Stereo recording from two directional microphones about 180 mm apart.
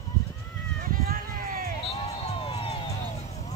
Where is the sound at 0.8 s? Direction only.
55° right (ahead or behind).